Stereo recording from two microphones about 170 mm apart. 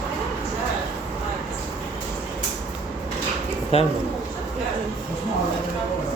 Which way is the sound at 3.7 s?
35° left (ahead or behind).